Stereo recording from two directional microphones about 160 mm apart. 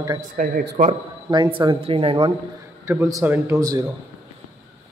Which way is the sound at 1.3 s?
30° right (ahead or behind).